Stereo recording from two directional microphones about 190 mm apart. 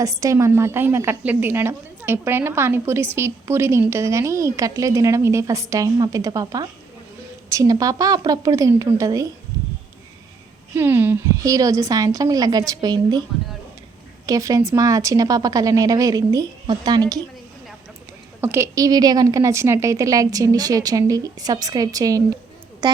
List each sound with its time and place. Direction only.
0.0 s a woman's voice: 15° right (ahead or behind)
9.5 s a sound: 20° right (ahead or behind)
10.8 s a woman's voice: 10° right (ahead or behind)
14.3 s a woman's voice: 20° right (ahead or behind)
18.3 s a woman's voice: 10° right (ahead or behind)